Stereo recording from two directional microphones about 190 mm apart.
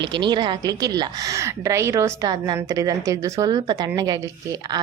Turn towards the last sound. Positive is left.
turn(degrees=-20)  # may be behind; listen again after turning